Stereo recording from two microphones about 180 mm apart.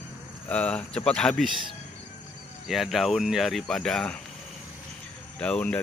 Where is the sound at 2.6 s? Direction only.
Centre (ahead or behind).